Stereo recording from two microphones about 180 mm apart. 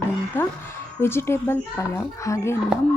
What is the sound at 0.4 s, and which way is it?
A woman's voice, 15° left (ahead or behind).